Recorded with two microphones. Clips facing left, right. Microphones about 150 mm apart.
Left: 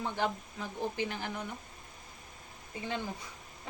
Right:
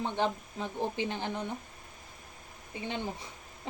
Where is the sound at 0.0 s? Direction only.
20° right (ahead or behind).